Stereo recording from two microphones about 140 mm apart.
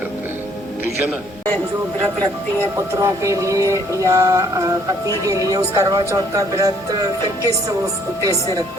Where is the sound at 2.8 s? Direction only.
20° right (ahead or behind).